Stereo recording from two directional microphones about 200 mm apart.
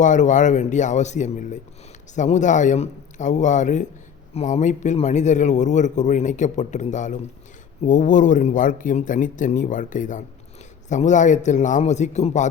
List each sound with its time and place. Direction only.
0.0 s a man's voice: 40° left (ahead or behind)